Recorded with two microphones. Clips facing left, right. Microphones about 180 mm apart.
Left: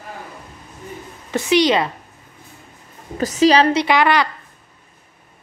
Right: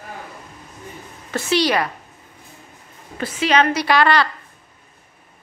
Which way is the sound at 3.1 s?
40° left (ahead or behind).